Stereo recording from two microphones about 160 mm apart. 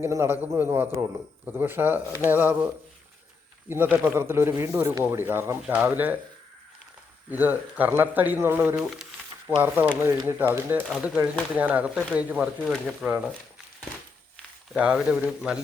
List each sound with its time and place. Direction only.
0.0 s speech: 15° right (ahead or behind)
3.7 s speech: 10° right (ahead or behind)
7.3 s speech: 10° right (ahead or behind)
14.7 s speech: 5° right (ahead or behind)